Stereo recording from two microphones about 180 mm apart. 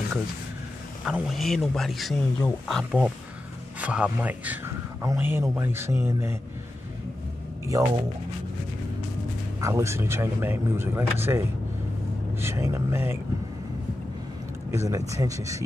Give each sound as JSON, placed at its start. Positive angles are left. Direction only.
{"t": 1.0, "sound": "speech", "side_deg": 0}
{"t": 7.7, "sound": "speech", "side_deg": -20}
{"t": 9.6, "sound": "speech", "side_deg": -15}
{"t": 14.7, "sound": "speech", "side_deg": -15}